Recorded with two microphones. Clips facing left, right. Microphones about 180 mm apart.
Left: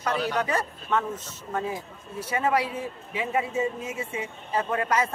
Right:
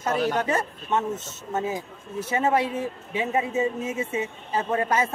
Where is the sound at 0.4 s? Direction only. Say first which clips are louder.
Right 2 dB; 25° right (ahead or behind).